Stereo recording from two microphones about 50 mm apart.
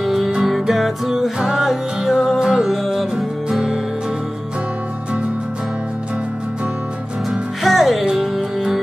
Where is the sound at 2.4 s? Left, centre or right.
Centre.